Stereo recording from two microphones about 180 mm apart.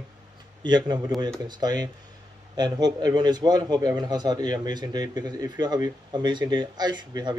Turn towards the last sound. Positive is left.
turn(degrees=-25)  # may be behind; listen again after turning